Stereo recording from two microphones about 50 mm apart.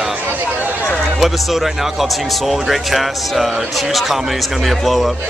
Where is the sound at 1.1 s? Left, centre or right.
Centre.